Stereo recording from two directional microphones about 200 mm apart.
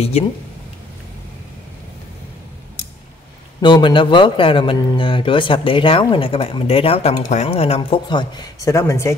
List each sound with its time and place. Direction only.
0.2 s speech: 30° left (ahead or behind)
3.6 s a man's voice: 25° left (ahead or behind)